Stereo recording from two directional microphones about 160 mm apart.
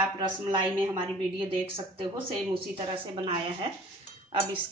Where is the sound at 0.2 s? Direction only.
30° right (ahead or behind).